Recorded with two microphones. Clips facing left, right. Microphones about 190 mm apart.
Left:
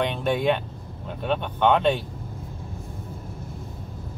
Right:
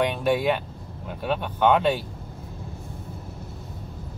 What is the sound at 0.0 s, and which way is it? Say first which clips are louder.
Speech: right 1 dB; 5° right (ahead or behind).